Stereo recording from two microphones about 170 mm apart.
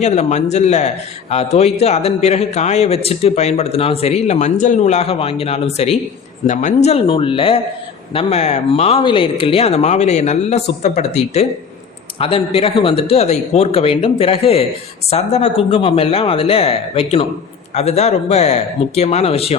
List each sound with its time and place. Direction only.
0.0 s a man's voice: 40° left (ahead or behind)
6.8 s a man's voice: 35° left (ahead or behind)